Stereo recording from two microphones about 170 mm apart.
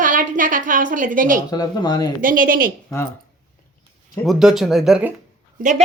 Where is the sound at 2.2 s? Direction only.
55° right (ahead or behind).